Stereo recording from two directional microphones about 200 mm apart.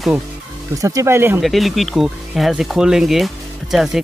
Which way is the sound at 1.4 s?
Centre (ahead or behind).